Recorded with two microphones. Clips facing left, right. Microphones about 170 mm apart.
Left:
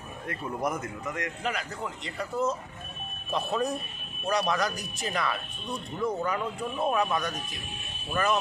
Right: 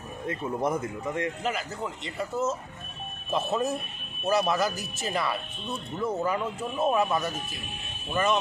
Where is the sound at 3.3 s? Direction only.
5° right (ahead or behind).